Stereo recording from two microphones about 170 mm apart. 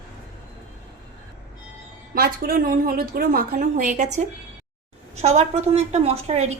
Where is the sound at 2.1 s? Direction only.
60° right (ahead or behind).